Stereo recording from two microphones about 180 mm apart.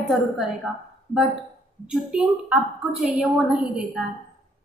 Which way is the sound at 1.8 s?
5° right (ahead or behind).